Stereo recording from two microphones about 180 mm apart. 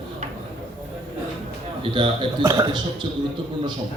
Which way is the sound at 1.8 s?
25° right (ahead or behind).